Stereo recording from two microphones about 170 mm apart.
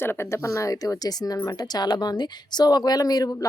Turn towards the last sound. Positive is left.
turn(degrees=20)  # may be behind; listen again after turning